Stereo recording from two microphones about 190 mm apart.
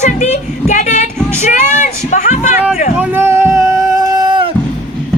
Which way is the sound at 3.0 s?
10° right (ahead or behind).